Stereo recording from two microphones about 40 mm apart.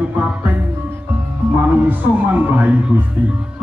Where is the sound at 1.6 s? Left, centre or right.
Right.